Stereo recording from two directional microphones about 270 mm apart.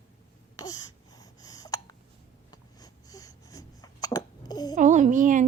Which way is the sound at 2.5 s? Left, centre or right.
Centre.